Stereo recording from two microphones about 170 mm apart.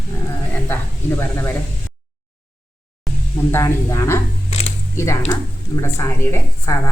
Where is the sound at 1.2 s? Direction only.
15° left (ahead or behind).